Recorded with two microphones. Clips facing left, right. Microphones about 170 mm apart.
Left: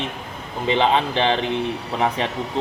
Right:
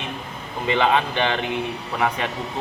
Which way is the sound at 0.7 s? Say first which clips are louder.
Left 1 dB; 25° left (ahead or behind).